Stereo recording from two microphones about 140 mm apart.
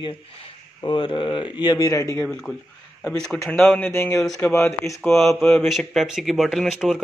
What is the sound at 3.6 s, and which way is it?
Speech, 15° left (ahead or behind).